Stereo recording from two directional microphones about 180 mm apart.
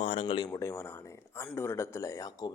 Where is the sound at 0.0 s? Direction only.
35° left (ahead or behind).